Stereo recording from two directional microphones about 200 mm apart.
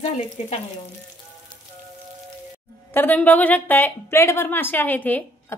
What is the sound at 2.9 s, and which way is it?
A woman's voice, 10° left (ahead or behind).